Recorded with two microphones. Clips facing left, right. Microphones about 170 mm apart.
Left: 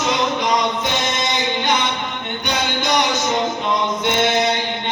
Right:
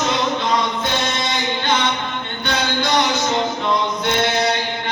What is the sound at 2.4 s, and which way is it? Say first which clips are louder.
Music: right 1 dB; 20° left (ahead or behind).